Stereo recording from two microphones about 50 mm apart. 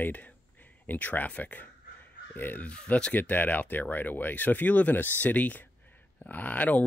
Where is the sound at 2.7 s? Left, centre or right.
Left.